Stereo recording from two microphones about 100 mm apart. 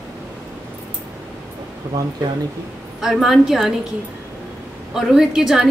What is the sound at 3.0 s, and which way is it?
Speech, centre (ahead or behind).